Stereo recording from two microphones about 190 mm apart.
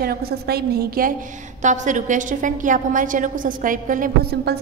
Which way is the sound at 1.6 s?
40° right (ahead or behind).